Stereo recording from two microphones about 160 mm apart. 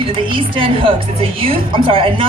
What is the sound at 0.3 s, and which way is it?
A woman's voice, 35° right (ahead or behind).